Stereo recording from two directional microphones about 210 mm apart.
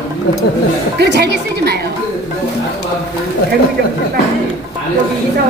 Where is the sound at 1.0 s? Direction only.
50° right (ahead or behind).